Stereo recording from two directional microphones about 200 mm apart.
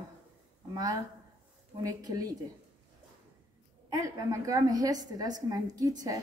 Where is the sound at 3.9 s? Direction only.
15° right (ahead or behind).